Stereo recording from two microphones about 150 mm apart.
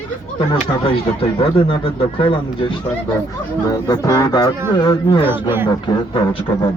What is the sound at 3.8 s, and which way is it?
Speech, 25° left (ahead or behind).